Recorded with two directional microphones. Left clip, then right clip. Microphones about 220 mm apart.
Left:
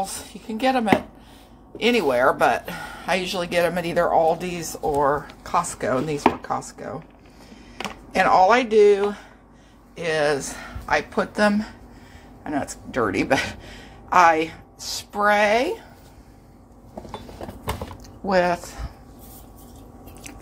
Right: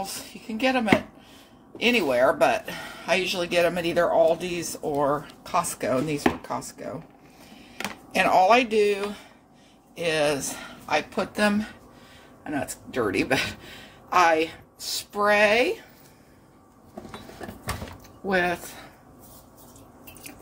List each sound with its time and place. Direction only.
0.0 s speech: centre (ahead or behind)
8.1 s speech: centre (ahead or behind)
12.4 s a woman's voice: 5° left (ahead or behind)
18.2 s speech: centre (ahead or behind)